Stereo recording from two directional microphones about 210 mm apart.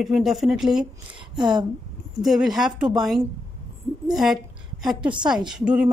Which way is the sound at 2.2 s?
Centre (ahead or behind).